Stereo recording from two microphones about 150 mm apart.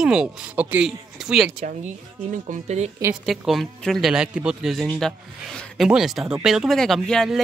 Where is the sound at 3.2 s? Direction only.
Centre (ahead or behind).